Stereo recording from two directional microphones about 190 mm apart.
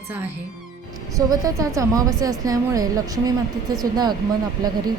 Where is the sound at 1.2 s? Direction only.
20° right (ahead or behind).